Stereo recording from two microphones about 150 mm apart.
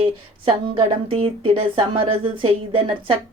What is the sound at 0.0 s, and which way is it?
Speech, 35° right (ahead or behind).